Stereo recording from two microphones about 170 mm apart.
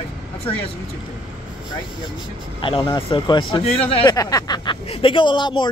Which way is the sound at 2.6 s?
25° left (ahead or behind).